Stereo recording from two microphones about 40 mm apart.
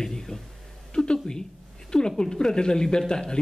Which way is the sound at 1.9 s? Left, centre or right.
Centre.